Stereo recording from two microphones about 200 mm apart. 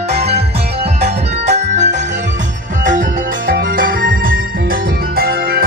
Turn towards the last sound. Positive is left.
turn(degrees=-50)  # may be behind; listen again after turning